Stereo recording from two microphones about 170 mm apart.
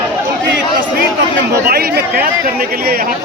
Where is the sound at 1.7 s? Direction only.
65° right (ahead or behind).